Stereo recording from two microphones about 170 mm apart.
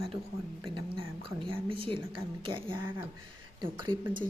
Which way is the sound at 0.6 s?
30° right (ahead or behind).